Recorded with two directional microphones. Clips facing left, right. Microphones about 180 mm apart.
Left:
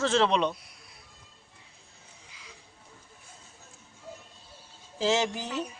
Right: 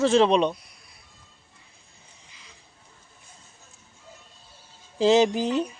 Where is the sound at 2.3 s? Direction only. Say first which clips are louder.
Left 3 dB; 10° left (ahead or behind).